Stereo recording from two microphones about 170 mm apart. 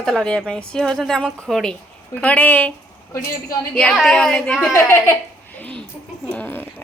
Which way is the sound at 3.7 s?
5° left (ahead or behind).